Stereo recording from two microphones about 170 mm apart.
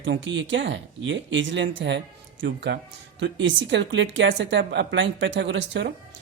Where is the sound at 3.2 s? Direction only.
90° right.